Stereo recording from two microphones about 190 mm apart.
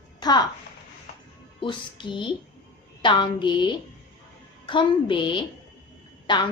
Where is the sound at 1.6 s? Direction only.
25° left (ahead or behind).